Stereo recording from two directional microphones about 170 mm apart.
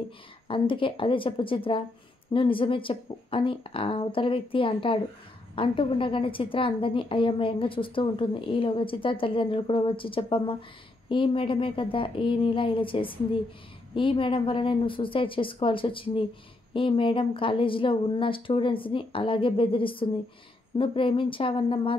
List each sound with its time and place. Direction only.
0.5 s a woman's voice: 30° left (ahead or behind)